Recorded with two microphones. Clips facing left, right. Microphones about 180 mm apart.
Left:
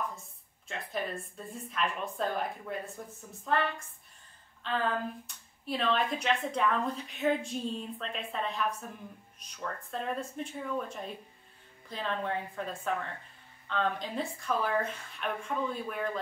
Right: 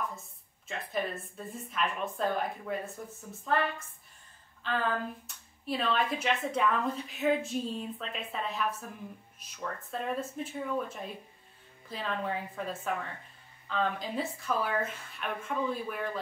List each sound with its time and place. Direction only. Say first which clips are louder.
0.7 s speech: right 2 dB; centre (ahead or behind)
4.6 s speech: even; centre (ahead or behind)